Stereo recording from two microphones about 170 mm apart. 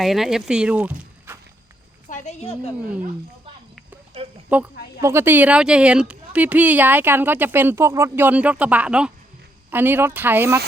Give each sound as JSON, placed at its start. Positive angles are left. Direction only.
{"t": 0.0, "sound": "speech", "side_deg": 0}
{"t": 2.0, "sound": "a woman's voice", "side_deg": 45}
{"t": 4.4, "sound": "speech", "side_deg": -10}